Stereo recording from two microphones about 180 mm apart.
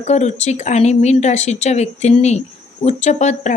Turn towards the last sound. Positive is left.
turn(degrees=40)  # may be behind; listen again after turning